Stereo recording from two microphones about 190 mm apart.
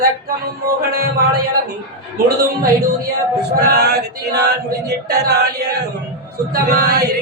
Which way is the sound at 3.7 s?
60° right (ahead or behind).